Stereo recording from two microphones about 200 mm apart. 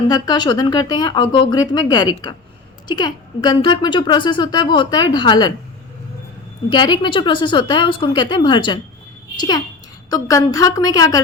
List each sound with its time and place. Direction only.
0.1 s a woman's voice: 20° left (ahead or behind)
6.7 s a woman's voice: 20° left (ahead or behind)